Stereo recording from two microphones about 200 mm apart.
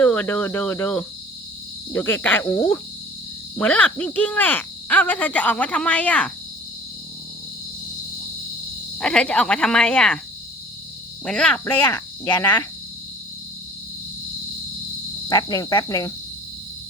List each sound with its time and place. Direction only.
0.0 s speech: 10° left (ahead or behind)
9.0 s speech: 5° left (ahead or behind)
11.3 s speech: 5° left (ahead or behind)
11.9 s speech: 15° left (ahead or behind)
15.3 s speech: 20° left (ahead or behind)